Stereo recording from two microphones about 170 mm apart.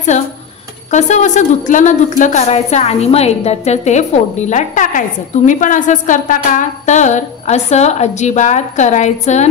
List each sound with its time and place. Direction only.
0.1 s a woman's voice: 45° left (ahead or behind)